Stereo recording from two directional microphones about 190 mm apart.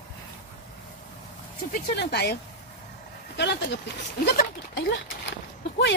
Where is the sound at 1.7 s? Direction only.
55° left (ahead or behind).